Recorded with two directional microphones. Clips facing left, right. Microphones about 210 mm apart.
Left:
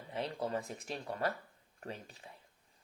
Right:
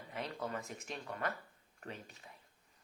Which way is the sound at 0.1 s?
30° left (ahead or behind).